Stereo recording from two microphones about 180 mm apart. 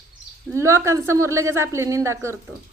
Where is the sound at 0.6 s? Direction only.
15° right (ahead or behind).